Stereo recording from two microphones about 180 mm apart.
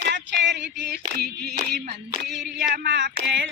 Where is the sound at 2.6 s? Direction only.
60° right (ahead or behind).